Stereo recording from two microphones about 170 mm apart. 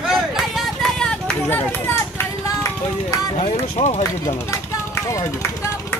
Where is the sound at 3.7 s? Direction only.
40° left (ahead or behind).